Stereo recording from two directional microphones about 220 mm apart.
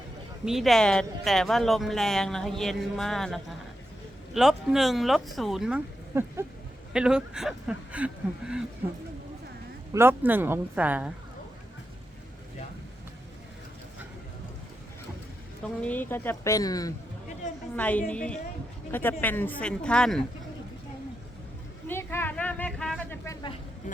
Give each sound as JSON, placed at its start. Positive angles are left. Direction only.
{"t": 0.4, "sound": "speech", "side_deg": 0}
{"t": 9.9, "sound": "speech", "side_deg": -10}
{"t": 15.8, "sound": "speech", "side_deg": 10}
{"t": 21.8, "sound": "a sound", "side_deg": 10}